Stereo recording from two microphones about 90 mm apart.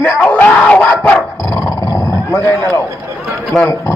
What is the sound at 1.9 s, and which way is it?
Roaring cats, 35° left (ahead or behind).